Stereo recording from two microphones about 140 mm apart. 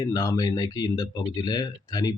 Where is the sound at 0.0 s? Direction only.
25° left (ahead or behind).